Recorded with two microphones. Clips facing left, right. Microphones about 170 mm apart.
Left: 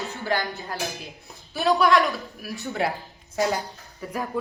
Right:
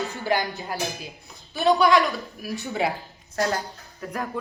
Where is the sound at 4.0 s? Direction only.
5° left (ahead or behind).